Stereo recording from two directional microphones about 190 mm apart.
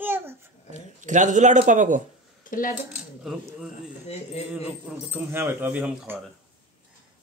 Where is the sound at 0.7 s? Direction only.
40° right (ahead or behind).